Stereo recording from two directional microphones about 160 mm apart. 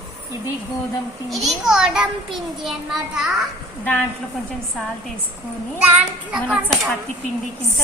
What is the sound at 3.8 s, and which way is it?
Speech, 10° left (ahead or behind).